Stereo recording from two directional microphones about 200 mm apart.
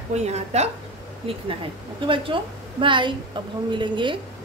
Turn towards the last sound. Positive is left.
turn(degrees=-25)  # may be behind; listen again after turning